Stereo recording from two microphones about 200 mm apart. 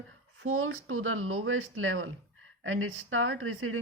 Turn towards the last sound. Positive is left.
turn(degrees=-90)